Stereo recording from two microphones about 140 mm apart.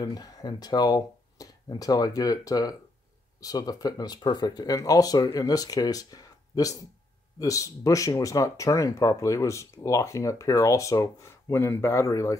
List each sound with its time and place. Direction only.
0.0 s speech: 30° left (ahead or behind)